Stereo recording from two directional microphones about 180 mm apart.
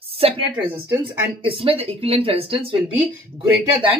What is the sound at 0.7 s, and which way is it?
Speech, 15° right (ahead or behind).